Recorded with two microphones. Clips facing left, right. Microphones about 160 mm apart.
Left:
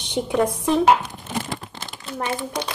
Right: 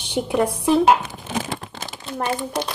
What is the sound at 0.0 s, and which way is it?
Speech, 5° right (ahead or behind).